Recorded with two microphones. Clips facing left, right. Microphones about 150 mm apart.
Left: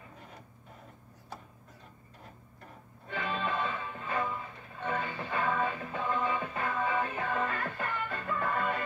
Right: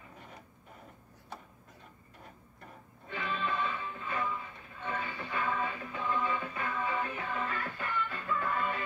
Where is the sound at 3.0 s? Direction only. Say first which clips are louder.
Left 2 dB; 50° left (ahead or behind).